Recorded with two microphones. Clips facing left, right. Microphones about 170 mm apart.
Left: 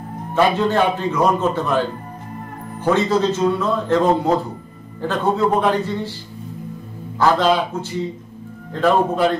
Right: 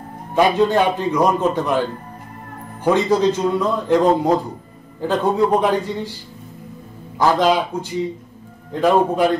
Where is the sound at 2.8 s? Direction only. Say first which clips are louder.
Right 1 dB; 15° right (ahead or behind).